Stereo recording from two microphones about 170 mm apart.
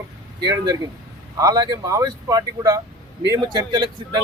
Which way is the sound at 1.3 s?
20° right (ahead or behind).